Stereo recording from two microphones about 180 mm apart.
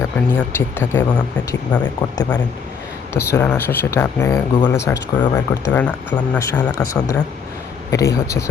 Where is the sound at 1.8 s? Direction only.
25° left (ahead or behind).